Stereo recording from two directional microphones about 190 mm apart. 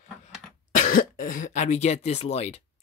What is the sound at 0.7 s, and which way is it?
Speech, 45° left (ahead or behind).